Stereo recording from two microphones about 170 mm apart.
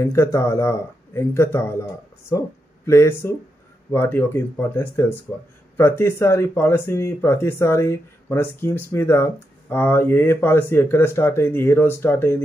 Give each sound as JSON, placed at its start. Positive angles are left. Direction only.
{"t": 0.0, "sound": "speech", "side_deg": 15}